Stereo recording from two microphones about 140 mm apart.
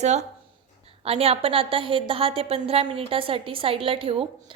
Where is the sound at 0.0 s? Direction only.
55° right (ahead or behind).